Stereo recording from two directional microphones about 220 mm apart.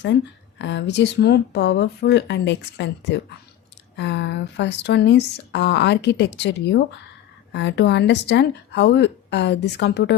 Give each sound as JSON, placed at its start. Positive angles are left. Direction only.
{"t": 0.6, "sound": "speech", "side_deg": 50}